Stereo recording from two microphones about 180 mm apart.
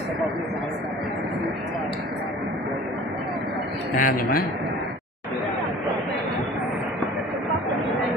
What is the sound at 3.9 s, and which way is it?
Speech, 50° left (ahead or behind).